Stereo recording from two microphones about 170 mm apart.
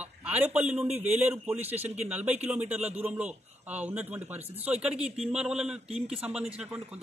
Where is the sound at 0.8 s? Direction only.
40° right (ahead or behind).